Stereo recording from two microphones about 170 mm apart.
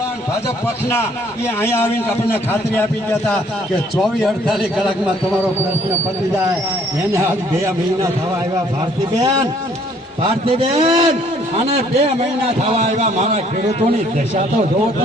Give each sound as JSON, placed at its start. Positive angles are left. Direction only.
{"t": 1.6, "sound": "a man's voice", "side_deg": 15}
{"t": 7.1, "sound": "speech", "side_deg": -15}
{"t": 10.2, "sound": "a man's voice", "side_deg": -35}